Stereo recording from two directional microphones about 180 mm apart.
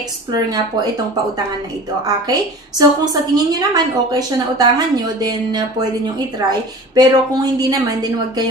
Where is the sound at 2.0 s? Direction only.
20° right (ahead or behind).